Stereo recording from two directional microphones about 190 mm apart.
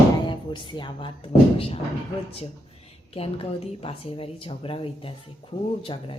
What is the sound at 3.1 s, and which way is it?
Speech, 30° left (ahead or behind).